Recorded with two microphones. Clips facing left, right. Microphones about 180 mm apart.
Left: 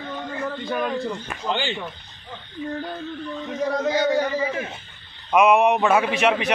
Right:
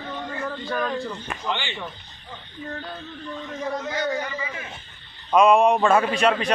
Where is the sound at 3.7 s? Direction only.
85° left.